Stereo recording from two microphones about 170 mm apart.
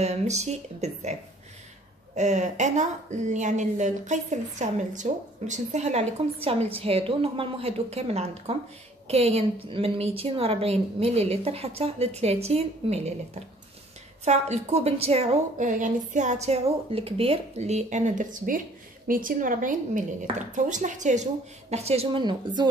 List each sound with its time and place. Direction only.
0.0 s a woman's voice: 40° right (ahead or behind)
2.1 s a woman's voice: 45° right (ahead or behind)